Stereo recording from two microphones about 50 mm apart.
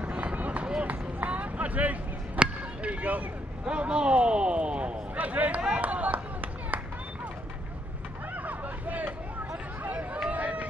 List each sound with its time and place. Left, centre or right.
0.0 s run: right
2.3 s a sound: right
3.7 s a sound: right
5.6 s run: right
8.4 s hubbub: right
9.8 s run: right